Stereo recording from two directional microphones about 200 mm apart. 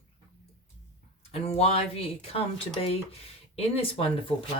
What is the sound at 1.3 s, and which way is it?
Speech, 30° left (ahead or behind).